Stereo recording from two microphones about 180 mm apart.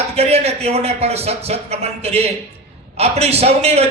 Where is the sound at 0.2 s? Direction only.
35° right (ahead or behind).